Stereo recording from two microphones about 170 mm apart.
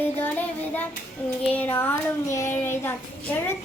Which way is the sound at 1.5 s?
10° left (ahead or behind).